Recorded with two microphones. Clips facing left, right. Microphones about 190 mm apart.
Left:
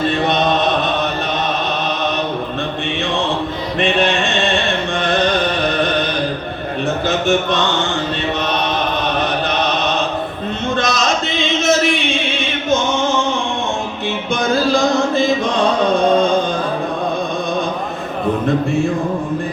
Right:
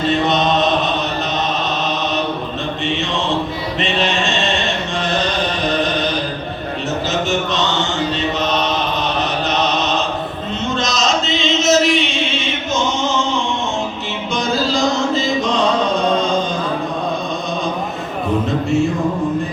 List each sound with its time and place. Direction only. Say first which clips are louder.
3.8 s music: left 4 dB; 55° left (ahead or behind)
10.8 s a sound: even; 55° left (ahead or behind)
14.7 s chant: left 2 dB; 55° left (ahead or behind)